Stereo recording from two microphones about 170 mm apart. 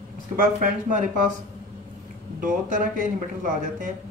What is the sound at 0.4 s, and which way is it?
Speech, 50° right (ahead or behind).